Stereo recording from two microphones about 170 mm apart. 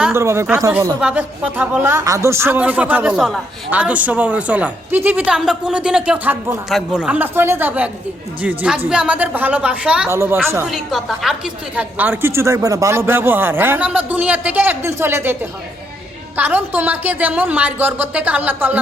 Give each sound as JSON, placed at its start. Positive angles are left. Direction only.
{"t": 0.0, "sound": "speech", "side_deg": -15}
{"t": 10.7, "sound": "speech", "side_deg": 0}